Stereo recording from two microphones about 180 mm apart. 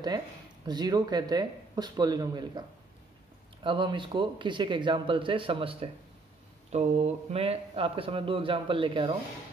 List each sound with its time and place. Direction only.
0.7 s speech: 25° right (ahead or behind)
3.6 s a man's voice: 25° right (ahead or behind)